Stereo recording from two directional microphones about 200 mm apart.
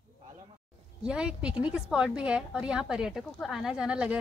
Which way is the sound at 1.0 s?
5° right (ahead or behind).